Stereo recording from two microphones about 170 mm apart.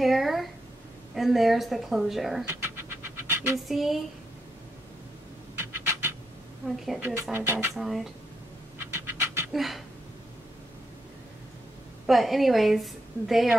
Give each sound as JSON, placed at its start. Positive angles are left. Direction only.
{"t": 0.0, "sound": "a woman's voice", "side_deg": 0}
{"t": 2.4, "sound": "a sound", "side_deg": -15}
{"t": 3.6, "sound": "a woman's voice", "side_deg": 0}
{"t": 5.6, "sound": "scratch", "side_deg": -15}
{"t": 7.0, "sound": "speech", "side_deg": -10}
{"t": 7.7, "sound": "a woman's voice", "side_deg": 0}
{"t": 8.9, "sound": "a sound", "side_deg": -15}
{"t": 9.5, "sound": "a sound", "side_deg": 0}
{"t": 12.1, "sound": "a woman's voice", "side_deg": 0}